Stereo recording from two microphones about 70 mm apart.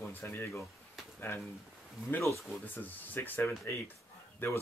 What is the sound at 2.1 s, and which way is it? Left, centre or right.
Speech, left.